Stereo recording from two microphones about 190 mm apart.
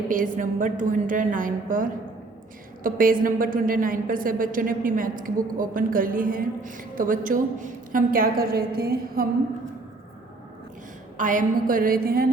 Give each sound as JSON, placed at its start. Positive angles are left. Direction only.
{"t": 0.1, "sound": "a woman's voice", "side_deg": -45}
{"t": 11.2, "sound": "a woman's voice", "side_deg": -45}